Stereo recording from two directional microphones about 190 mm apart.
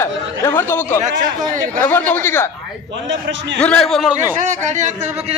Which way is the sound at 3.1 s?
75° right (ahead or behind).